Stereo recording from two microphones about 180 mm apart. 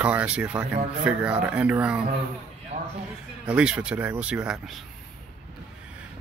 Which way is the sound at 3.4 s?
5° right (ahead or behind).